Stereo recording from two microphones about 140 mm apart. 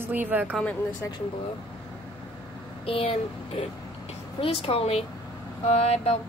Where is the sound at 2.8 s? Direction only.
40° left (ahead or behind).